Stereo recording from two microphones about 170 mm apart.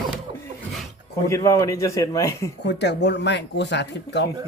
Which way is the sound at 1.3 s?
20° left (ahead or behind).